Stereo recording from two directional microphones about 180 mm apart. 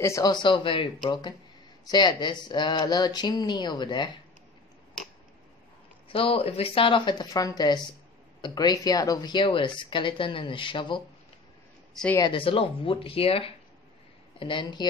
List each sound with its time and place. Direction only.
0.0 s speech: 20° left (ahead or behind)
6.0 s speech: 30° left (ahead or behind)
11.9 s speech: 5° left (ahead or behind)
12.2 s speech: 30° left (ahead or behind)